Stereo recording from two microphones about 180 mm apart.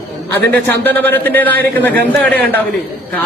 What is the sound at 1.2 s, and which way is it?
A man's voice, 10° left (ahead or behind).